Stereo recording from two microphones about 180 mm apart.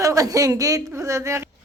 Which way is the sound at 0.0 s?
20° right (ahead or behind).